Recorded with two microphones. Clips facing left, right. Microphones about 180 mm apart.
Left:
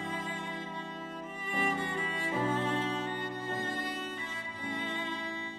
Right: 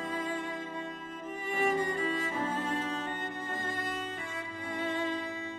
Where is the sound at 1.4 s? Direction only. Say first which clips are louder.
Right 4 dB; 45° right (ahead or behind).